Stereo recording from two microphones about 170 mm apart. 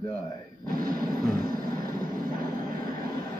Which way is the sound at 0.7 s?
55° right (ahead or behind).